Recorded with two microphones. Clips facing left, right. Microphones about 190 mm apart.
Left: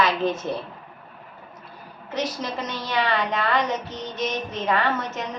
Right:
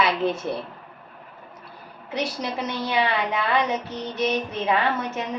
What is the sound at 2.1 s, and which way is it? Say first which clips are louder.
A woman's voice: even; 10° right (ahead or behind).